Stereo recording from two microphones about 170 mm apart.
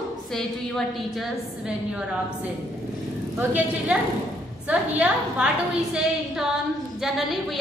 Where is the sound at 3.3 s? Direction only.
10° right (ahead or behind).